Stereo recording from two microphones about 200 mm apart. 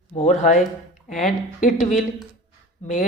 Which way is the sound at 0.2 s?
35° left (ahead or behind).